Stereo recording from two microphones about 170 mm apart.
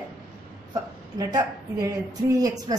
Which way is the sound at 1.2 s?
20° right (ahead or behind).